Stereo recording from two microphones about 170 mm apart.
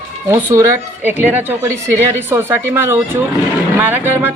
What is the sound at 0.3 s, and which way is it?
Speech, 15° right (ahead or behind).